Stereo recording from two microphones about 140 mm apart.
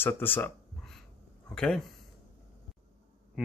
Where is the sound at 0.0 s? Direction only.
15° left (ahead or behind).